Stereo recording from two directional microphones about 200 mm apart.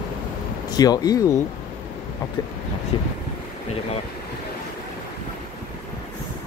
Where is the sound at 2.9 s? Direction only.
25° left (ahead or behind).